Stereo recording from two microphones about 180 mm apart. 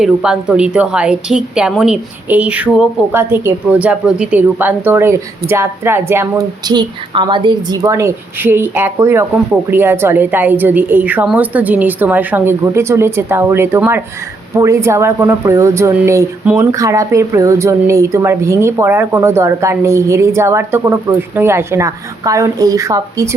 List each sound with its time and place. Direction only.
0.0 s a woman's voice: 5° right (ahead or behind)